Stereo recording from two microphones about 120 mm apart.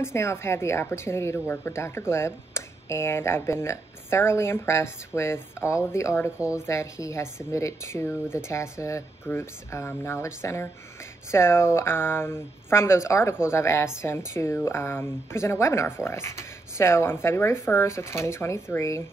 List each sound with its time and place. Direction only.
0.0 s speech: 20° left (ahead or behind)